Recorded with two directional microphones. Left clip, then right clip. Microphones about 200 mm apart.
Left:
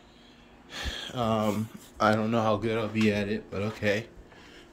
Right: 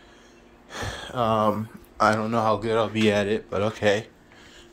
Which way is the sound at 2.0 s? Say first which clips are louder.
Right 4 dB; 10° left (ahead or behind).